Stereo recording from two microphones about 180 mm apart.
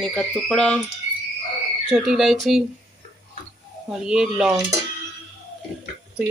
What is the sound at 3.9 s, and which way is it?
Speech, 5° right (ahead or behind).